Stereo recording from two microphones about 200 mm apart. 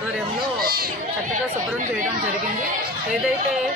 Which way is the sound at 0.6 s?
50° right (ahead or behind).